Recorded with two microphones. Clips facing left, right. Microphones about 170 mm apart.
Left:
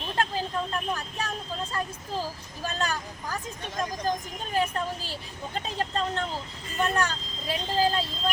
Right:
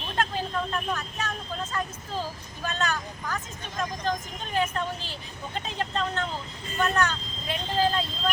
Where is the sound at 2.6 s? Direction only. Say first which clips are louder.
Right 1 dB; 35° left (ahead or behind).